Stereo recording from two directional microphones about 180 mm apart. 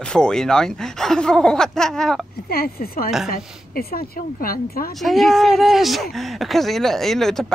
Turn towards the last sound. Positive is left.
turn(degrees=0)  # may be behind; listen again after turning